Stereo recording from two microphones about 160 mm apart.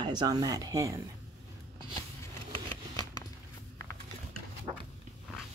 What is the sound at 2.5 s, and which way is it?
Vehicle, 35° right (ahead or behind).